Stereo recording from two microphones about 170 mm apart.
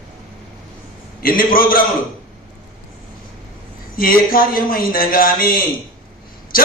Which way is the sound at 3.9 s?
55° left (ahead or behind).